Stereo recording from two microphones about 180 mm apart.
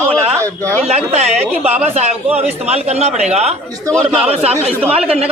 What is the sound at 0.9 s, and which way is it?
Speech, 35° right (ahead or behind).